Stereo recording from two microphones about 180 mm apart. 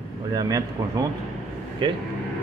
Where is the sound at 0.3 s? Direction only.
20° right (ahead or behind).